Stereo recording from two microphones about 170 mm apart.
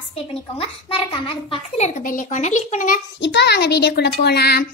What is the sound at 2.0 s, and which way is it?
Speech, 50° left (ahead or behind).